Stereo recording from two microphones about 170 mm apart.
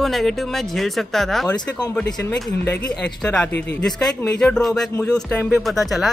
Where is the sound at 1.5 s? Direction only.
25° left (ahead or behind).